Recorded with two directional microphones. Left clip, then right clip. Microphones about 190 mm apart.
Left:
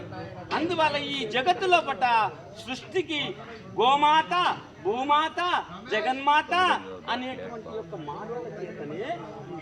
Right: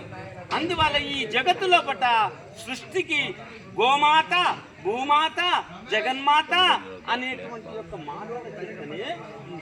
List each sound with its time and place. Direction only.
0.5 s a man's voice: 15° left (ahead or behind)